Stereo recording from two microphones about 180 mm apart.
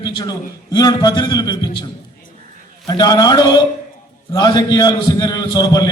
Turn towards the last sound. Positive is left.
turn(degrees=20)  # may be behind; listen again after turning